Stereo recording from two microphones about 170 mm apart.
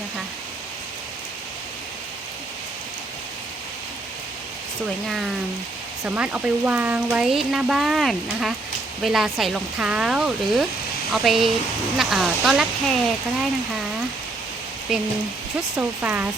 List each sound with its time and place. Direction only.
5.0 s speech: centre (ahead or behind)
15.7 s speech: 10° right (ahead or behind)